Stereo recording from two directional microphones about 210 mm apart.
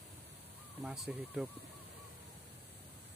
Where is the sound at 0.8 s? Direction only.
5° right (ahead or behind).